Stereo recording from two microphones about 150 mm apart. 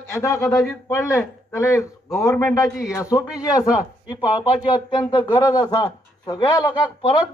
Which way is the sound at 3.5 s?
25° left (ahead or behind).